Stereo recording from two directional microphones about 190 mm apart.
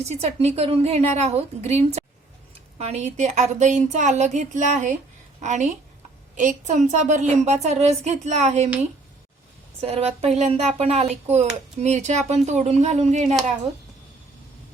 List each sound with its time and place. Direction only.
0.0 s a woman's voice: 35° right (ahead or behind)
9.8 s a woman's voice: 35° right (ahead or behind)